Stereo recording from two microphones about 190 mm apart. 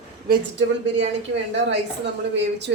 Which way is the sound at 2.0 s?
65° right (ahead or behind).